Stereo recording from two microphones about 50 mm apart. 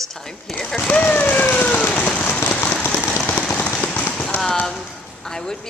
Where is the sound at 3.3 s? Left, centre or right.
Left.